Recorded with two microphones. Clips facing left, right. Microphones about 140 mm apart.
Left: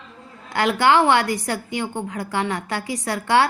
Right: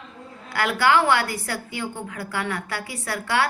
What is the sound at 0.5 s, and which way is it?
A woman's voice, 25° left (ahead or behind).